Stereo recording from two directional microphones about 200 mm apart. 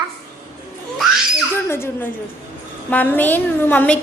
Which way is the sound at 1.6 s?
10° left (ahead or behind).